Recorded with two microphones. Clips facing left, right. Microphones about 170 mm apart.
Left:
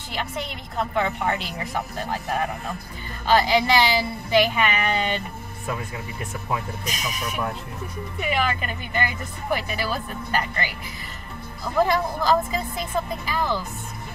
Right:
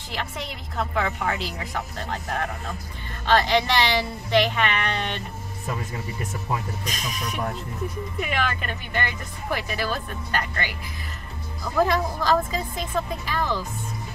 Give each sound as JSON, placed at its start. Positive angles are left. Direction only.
{"t": 0.1, "sound": "a woman's voice", "side_deg": 0}
{"t": 8.2, "sound": "a woman's voice", "side_deg": 0}